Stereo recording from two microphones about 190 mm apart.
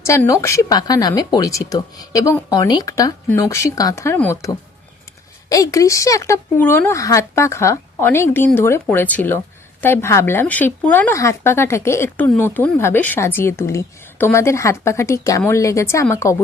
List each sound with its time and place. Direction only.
0.0 s speech: 15° left (ahead or behind)